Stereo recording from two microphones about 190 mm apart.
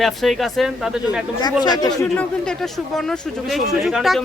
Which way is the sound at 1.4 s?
20° left (ahead or behind).